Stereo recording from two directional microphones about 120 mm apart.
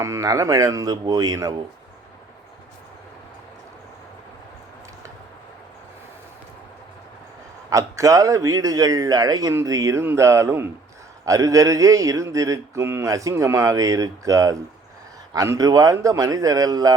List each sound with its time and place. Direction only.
0.0 s speech: 25° right (ahead or behind)
7.7 s speech: 30° right (ahead or behind)